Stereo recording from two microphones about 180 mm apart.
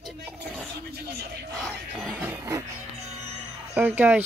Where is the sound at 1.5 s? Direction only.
Centre (ahead or behind).